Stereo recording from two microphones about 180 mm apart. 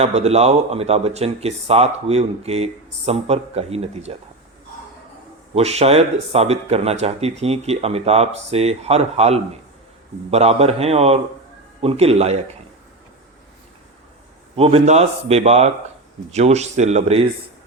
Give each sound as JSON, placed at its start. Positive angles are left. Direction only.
{"t": 0.0, "sound": "speech", "side_deg": -35}
{"t": 5.5, "sound": "speech", "side_deg": -35}
{"t": 14.5, "sound": "speech", "side_deg": -30}